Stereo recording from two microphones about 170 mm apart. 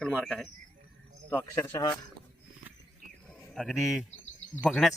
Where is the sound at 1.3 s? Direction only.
10° left (ahead or behind).